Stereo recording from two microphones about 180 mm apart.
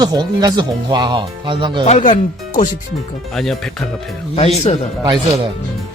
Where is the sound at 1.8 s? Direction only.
40° left (ahead or behind).